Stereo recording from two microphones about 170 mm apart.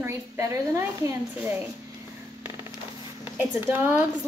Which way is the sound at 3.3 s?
10° right (ahead or behind).